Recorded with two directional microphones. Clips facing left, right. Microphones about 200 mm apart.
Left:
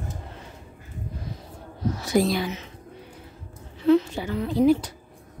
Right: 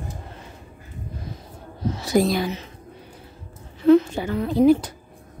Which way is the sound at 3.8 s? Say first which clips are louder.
Right 4 dB; 50° right (ahead or behind).